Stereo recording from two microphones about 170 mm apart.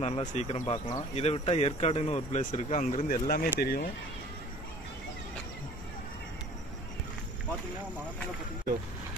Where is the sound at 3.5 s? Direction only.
65° left (ahead or behind).